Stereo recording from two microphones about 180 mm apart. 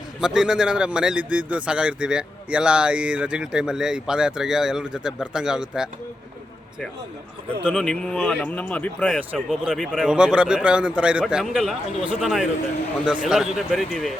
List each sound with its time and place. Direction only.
0.2 s a man's voice: 5° right (ahead or behind)
7.7 s a man's voice: 5° left (ahead or behind)
11.9 s speech: 35° right (ahead or behind)
12.2 s a man's voice: centre (ahead or behind)